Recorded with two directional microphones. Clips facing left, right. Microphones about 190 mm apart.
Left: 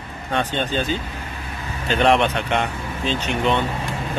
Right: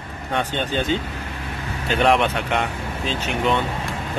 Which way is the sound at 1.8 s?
10° right (ahead or behind).